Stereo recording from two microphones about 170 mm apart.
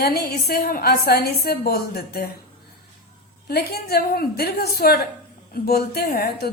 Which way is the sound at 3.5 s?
70° left (ahead or behind).